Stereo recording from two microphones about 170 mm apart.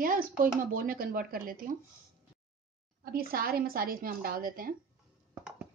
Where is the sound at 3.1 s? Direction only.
60° right (ahead or behind).